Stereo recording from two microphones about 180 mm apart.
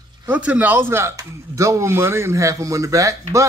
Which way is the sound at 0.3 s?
10° right (ahead or behind).